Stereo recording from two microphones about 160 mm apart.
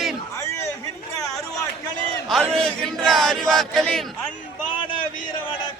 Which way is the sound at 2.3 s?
5° left (ahead or behind).